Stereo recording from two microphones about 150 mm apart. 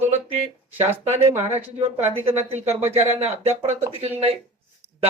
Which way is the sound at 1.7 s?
45° right (ahead or behind).